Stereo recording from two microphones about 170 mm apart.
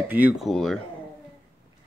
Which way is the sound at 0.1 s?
5° right (ahead or behind).